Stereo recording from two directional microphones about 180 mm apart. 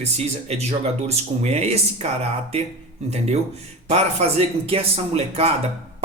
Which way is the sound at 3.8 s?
35° right (ahead or behind).